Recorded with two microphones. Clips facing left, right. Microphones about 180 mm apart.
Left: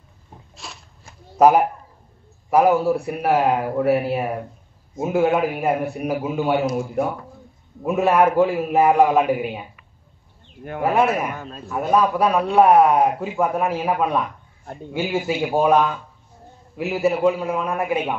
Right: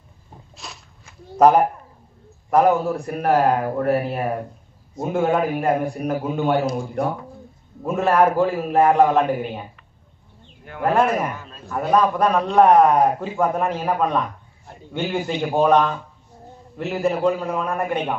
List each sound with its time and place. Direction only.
0.6 s shuffling cards: centre (ahead or behind)
1.4 s a man's voice: 10° left (ahead or behind)
11.3 s a sound: 50° left (ahead or behind)
11.6 s a man's voice: centre (ahead or behind)